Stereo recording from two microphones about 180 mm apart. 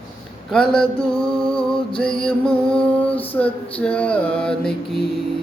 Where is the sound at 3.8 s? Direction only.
10° left (ahead or behind).